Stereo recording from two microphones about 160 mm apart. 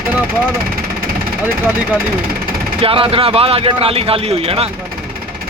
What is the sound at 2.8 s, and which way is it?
Speech, 35° right (ahead or behind).